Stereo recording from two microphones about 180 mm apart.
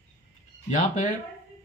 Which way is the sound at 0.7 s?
45° left (ahead or behind).